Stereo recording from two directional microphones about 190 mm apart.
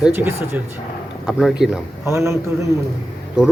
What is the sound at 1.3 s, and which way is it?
Speech, centre (ahead or behind).